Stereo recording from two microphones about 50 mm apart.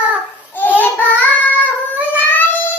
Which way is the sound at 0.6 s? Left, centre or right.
Left.